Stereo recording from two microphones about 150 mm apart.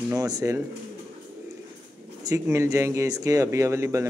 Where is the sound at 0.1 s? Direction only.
25° right (ahead or behind).